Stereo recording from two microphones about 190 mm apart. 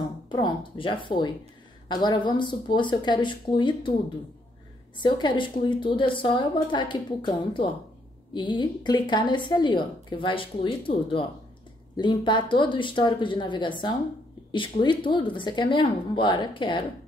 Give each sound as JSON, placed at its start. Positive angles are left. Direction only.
{"t": 0.3, "sound": "a woman's voice", "side_deg": 25}
{"t": 4.9, "sound": "a woman's voice", "side_deg": 25}